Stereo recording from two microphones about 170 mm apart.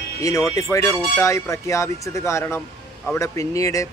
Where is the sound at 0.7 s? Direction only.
20° left (ahead or behind).